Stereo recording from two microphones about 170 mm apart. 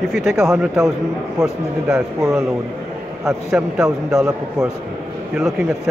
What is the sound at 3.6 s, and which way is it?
Speech, 10° right (ahead or behind).